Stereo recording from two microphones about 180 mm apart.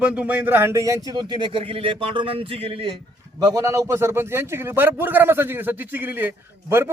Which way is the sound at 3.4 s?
20° right (ahead or behind).